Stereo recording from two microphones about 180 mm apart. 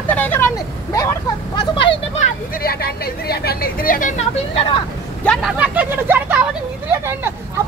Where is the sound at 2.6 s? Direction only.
60° left (ahead or behind).